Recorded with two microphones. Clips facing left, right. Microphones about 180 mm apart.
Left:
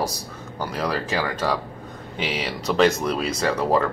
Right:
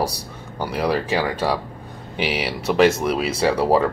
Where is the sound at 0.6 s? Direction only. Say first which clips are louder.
Right 4 dB; 10° right (ahead or behind).